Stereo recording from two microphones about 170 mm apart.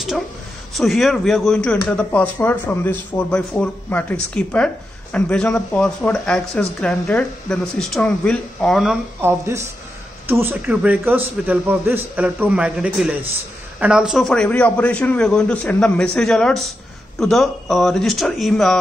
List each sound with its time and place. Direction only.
0.7 s speech: centre (ahead or behind)
9.2 s a man's voice: 15° right (ahead or behind); by 18.8 s centre (ahead or behind)